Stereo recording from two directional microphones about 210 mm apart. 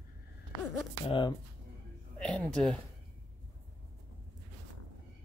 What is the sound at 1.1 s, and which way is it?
Speech, 25° left (ahead or behind).